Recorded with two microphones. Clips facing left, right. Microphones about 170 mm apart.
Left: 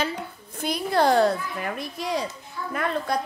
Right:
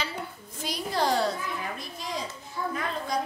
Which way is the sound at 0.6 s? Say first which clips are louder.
Left 6 dB; 60° left (ahead or behind).